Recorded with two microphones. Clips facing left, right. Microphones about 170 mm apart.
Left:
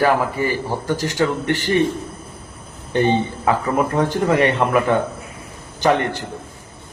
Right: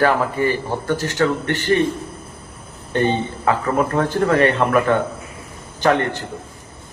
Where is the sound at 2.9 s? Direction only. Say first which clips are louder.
Left 2 dB; 15° left (ahead or behind).